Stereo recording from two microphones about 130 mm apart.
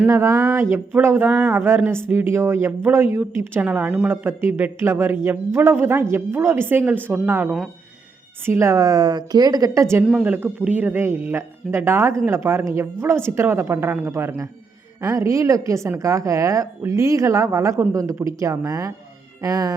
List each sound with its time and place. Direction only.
0.1 s a woman's voice: 20° right (ahead or behind)
10.0 s a woman's voice: 5° right (ahead or behind); by 19.7 s 25° right (ahead or behind)